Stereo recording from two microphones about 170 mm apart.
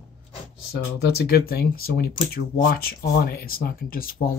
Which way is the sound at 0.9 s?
70° left (ahead or behind).